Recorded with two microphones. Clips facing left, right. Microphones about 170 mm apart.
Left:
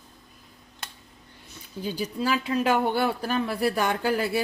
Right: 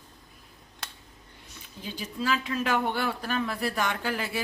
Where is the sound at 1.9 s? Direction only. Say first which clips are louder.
Left 2 dB; 35° left (ahead or behind).